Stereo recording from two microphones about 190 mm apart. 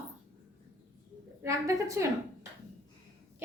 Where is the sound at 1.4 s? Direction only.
15° right (ahead or behind).